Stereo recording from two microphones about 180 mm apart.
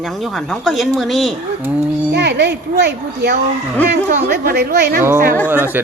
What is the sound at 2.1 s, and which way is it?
Speech, 70° right (ahead or behind).